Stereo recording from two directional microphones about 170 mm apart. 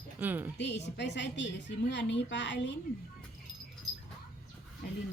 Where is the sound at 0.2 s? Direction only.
10° right (ahead or behind).